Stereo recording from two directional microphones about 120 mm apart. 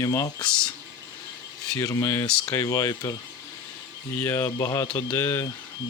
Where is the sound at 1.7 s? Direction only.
25° left (ahead or behind).